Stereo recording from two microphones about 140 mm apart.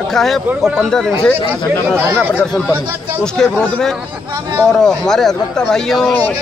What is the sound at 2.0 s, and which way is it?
Speech, 15° right (ahead or behind).